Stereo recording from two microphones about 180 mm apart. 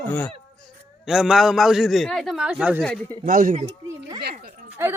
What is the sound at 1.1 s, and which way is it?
A man's voice, centre (ahead or behind).